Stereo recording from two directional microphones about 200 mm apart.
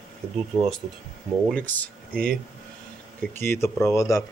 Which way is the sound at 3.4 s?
10° left (ahead or behind).